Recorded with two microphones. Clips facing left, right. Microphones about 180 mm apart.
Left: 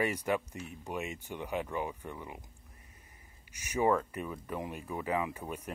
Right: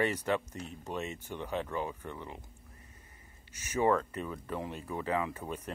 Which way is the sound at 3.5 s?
15° left (ahead or behind).